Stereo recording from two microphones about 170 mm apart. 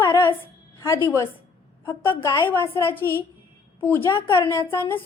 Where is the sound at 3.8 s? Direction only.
15° left (ahead or behind).